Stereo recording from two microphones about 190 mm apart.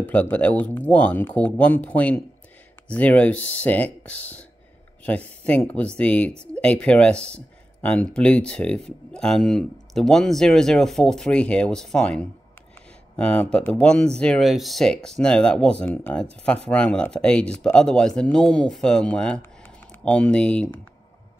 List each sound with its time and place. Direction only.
0.0 s speech: 10° left (ahead or behind)